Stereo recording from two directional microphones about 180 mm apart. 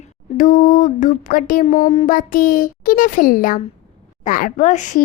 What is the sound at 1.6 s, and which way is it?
Speech, 35° left (ahead or behind).